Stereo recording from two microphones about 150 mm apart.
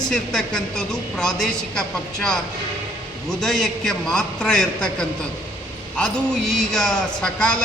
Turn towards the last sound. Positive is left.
turn(degrees=5)  # may be behind; listen again after turning